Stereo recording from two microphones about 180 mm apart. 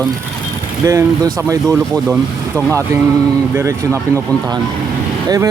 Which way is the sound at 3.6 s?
15° right (ahead or behind).